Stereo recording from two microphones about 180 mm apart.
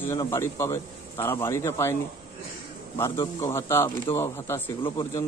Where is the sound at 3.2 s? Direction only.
15° left (ahead or behind).